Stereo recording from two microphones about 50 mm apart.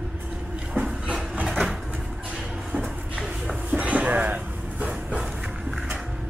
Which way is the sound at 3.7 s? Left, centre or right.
Right.